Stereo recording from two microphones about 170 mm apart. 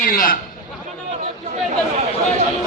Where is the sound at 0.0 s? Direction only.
55° left (ahead or behind).